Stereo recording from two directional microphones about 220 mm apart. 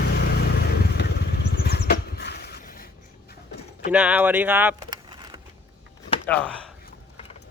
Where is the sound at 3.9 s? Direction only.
5° right (ahead or behind).